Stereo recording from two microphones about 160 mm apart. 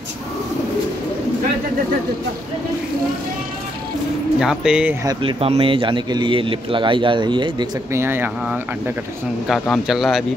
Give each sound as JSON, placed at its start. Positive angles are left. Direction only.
{"t": 4.4, "sound": "speech", "side_deg": -5}
{"t": 5.0, "sound": "a man's voice", "side_deg": -35}
{"t": 7.9, "sound": "speech", "side_deg": -15}
{"t": 9.5, "sound": "speech", "side_deg": 0}